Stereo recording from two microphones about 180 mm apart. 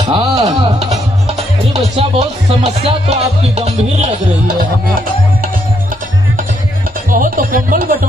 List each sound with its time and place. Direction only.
0.0 s tabla: 25° right (ahead or behind)
0.5 s music: 35° right (ahead or behind)
1.7 s speech: 35° right (ahead or behind)
7.1 s speech: 50° right (ahead or behind)